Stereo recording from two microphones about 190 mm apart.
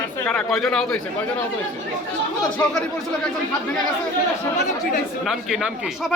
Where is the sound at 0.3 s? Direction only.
5° left (ahead or behind).